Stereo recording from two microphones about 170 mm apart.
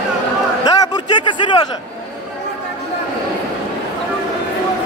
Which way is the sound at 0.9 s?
25° left (ahead or behind).